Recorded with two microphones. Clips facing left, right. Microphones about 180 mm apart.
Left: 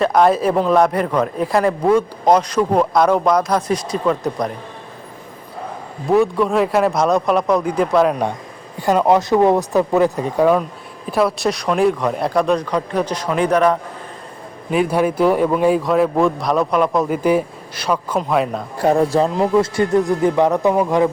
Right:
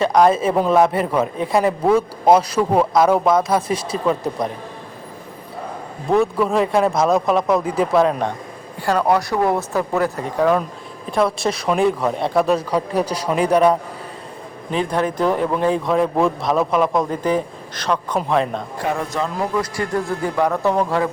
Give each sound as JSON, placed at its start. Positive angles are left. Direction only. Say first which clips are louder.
{"t": 0.0, "sound": "a man's voice", "louder": "left 1 dB", "side_deg": 0}
{"t": 6.1, "sound": "a man's voice", "louder": "left 2 dB", "side_deg": 0}
{"t": 8.8, "sound": "speech", "louder": "left 3 dB", "side_deg": 20}
{"t": 11.1, "sound": "a man's voice", "louder": "left 1 dB", "side_deg": 0}
{"t": 14.7, "sound": "a man's voice", "louder": "left 4 dB", "side_deg": 10}
{"t": 18.9, "sound": "speech", "louder": "left 8 dB", "side_deg": 35}